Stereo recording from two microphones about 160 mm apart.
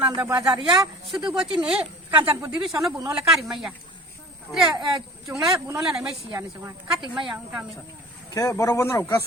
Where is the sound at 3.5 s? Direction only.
5° right (ahead or behind).